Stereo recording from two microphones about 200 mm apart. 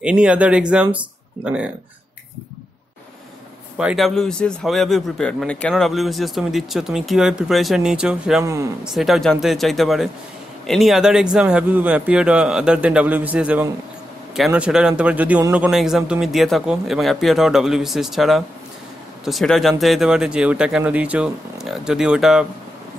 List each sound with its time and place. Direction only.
0.0 s a man's voice: 5° right (ahead or behind)
3.7 s a man's voice: centre (ahead or behind)